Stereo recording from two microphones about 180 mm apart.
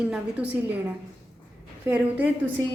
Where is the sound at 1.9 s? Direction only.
10° right (ahead or behind).